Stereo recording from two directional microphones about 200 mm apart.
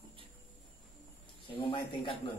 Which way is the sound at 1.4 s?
25° left (ahead or behind).